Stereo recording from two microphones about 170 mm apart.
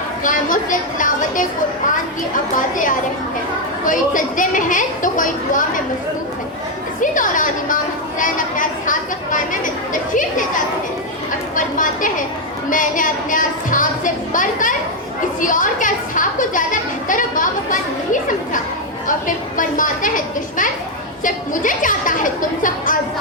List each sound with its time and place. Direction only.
0.3 s a woman's voice: 50° left (ahead or behind)
3.8 s a woman's voice: 50° left (ahead or behind)
7.0 s a woman's voice: 50° left (ahead or behind)